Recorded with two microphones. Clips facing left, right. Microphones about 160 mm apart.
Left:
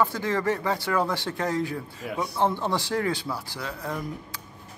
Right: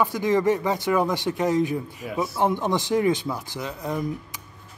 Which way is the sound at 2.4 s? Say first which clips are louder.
Right 2 dB; 15° right (ahead or behind).